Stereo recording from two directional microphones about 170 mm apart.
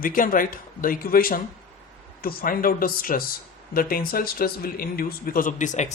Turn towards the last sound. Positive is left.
turn(degrees=45)  # may be behind; listen again after turning